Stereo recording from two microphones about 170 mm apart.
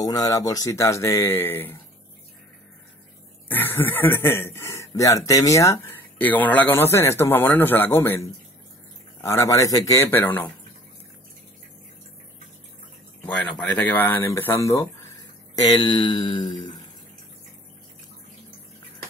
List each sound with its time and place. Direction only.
0.0 s speech: 20° left (ahead or behind)
3.4 s speech: 10° left (ahead or behind)
13.2 s speech: 5° left (ahead or behind)
15.6 s mantra: 25° left (ahead or behind)